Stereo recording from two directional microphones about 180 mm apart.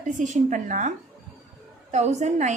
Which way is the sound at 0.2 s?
45° right (ahead or behind).